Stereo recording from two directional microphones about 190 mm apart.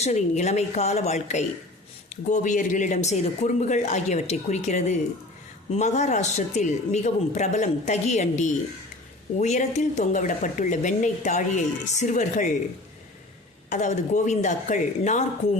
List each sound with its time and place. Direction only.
0.0 s speech: 35° left (ahead or behind)
13.7 s speech: 40° left (ahead or behind)